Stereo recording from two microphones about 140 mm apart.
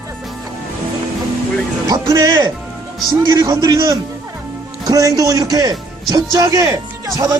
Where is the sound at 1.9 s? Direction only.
25° right (ahead or behind).